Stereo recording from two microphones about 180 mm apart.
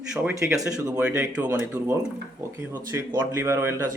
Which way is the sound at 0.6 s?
5° right (ahead or behind).